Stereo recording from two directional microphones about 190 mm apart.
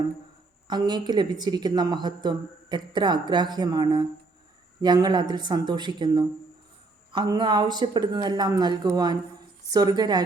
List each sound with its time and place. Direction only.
0.7 s a woman's voice: 20° right (ahead or behind)